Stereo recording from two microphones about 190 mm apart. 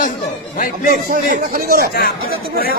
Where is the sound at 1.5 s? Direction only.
50° right (ahead or behind).